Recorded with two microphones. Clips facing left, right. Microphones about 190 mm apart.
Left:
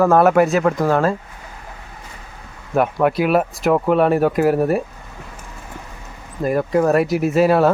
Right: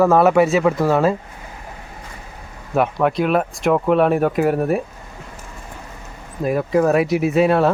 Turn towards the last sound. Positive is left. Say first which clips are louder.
# left 1 dB
turn(degrees=0)  # may be behind; listen again after turning